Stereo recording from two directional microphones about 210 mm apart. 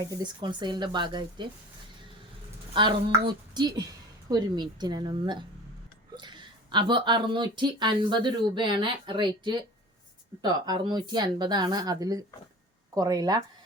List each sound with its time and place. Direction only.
0.0 s speech: 20° right (ahead or behind)
2.7 s speech: 20° right (ahead or behind)